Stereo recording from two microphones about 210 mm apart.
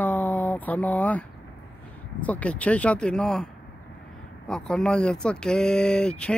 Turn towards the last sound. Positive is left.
turn(degrees=5)  # may be behind; listen again after turning